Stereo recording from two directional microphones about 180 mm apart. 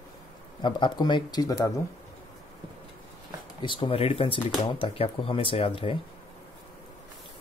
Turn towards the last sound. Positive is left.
turn(degrees=30)  # may be behind; listen again after turning